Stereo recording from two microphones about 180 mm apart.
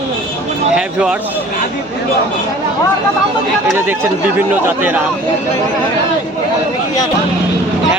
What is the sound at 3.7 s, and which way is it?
A man's voice, 10° right (ahead or behind).